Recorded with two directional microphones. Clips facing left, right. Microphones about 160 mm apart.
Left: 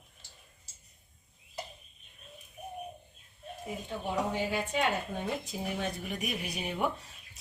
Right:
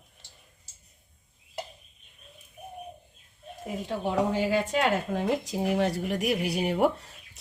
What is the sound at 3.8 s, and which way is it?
Speech, 90° right.